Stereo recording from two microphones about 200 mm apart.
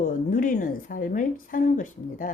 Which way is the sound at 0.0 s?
45° left (ahead or behind).